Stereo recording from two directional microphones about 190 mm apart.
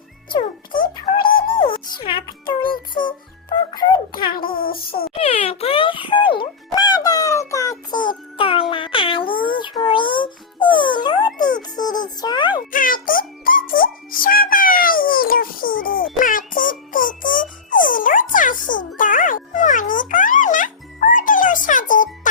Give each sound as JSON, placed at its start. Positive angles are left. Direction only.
{"t": 1.2, "sound": "music", "side_deg": 50}
{"t": 1.5, "sound": "music", "side_deg": 25}
{"t": 3.0, "sound": "child singing", "side_deg": 45}
{"t": 3.5, "sound": "speech", "side_deg": 20}
{"t": 4.3, "sound": "child singing", "side_deg": 50}
{"t": 5.1, "sound": "music", "side_deg": 30}
{"t": 8.7, "sound": "a sound", "side_deg": 25}
{"t": 11.8, "sound": "music", "side_deg": 20}
{"t": 12.2, "sound": "a sound", "side_deg": 20}
{"t": 12.7, "sound": "music", "side_deg": 45}